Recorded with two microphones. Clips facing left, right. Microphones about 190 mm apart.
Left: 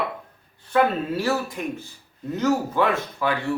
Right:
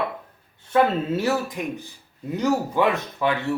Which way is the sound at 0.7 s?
20° right (ahead or behind).